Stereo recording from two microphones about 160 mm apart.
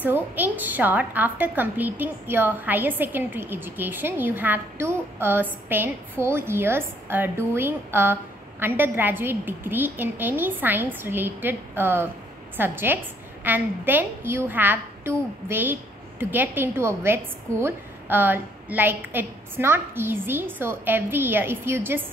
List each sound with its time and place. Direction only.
0.0 s a woman's voice: 10° right (ahead or behind)